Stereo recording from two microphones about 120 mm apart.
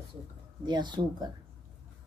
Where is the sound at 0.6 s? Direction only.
40° right (ahead or behind).